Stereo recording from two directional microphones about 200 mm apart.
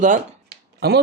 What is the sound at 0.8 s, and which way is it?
Speech, 55° right (ahead or behind).